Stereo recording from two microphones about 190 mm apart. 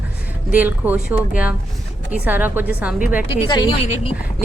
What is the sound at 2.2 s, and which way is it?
A woman's voice, 10° right (ahead or behind).